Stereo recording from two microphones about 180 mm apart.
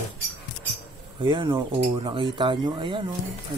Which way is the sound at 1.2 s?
25° right (ahead or behind).